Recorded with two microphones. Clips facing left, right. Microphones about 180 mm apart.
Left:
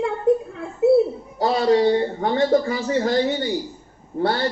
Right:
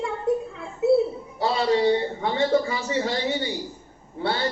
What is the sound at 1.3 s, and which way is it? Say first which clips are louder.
A man's voice: left 4 dB; 50° left (ahead or behind).